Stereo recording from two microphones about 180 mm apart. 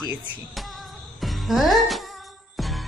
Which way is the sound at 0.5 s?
Centre (ahead or behind).